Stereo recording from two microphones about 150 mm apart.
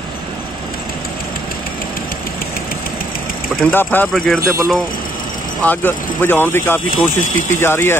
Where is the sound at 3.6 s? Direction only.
10° left (ahead or behind).